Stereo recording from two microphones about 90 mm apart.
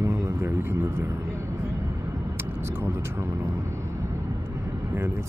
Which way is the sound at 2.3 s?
25° right (ahead or behind).